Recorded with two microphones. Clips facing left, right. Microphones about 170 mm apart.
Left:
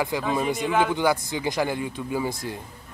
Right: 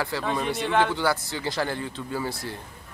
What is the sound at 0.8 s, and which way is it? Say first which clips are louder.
Speech: left 2 dB; 15° left (ahead or behind).